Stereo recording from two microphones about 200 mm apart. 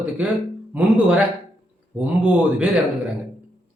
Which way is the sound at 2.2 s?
5° right (ahead or behind).